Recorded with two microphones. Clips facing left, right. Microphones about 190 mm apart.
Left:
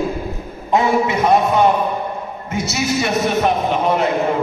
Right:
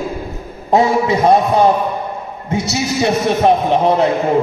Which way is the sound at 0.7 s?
30° right (ahead or behind).